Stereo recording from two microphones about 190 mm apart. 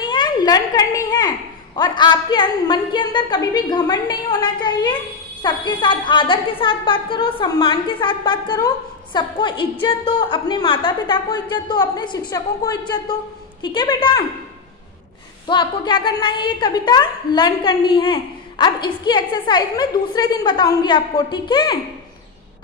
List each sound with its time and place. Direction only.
0.0 s a sound: 25° left (ahead or behind)
1.8 s a woman's voice: 25° left (ahead or behind)
15.4 s a woman's voice: 25° left (ahead or behind)